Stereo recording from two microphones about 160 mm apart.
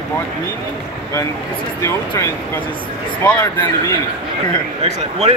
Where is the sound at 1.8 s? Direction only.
15° left (ahead or behind).